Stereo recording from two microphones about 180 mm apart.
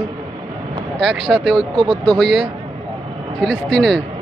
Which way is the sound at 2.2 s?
Centre (ahead or behind).